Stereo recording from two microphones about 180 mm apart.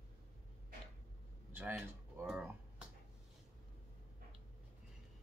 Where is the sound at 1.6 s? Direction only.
10° right (ahead or behind).